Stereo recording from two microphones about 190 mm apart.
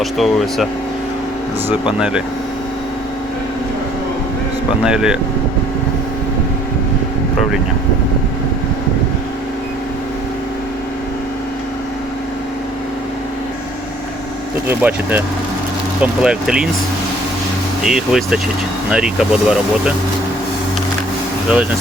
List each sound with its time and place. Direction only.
0.0 s speech: centre (ahead or behind)
1.9 s speech: 5° right (ahead or behind)
4.8 s speech: 5° right (ahead or behind)
14.7 s speech: 10° right (ahead or behind)
17.8 s speech: centre (ahead or behind)